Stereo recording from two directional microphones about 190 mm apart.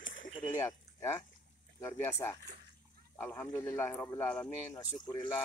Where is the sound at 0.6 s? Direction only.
15° left (ahead or behind).